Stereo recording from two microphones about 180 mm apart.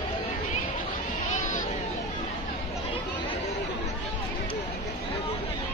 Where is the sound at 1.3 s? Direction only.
45° left (ahead or behind).